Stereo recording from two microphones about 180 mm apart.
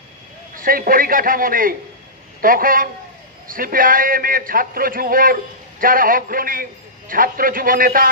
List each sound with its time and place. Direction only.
0.6 s a man's voice: 50° right (ahead or behind)